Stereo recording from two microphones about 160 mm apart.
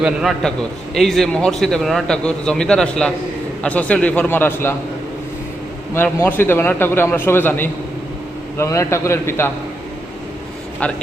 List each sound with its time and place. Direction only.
0.0 s a man's voice: centre (ahead or behind)
5.9 s a man's voice: 15° left (ahead or behind)